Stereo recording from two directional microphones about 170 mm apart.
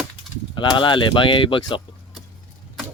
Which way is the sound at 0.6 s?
25° left (ahead or behind).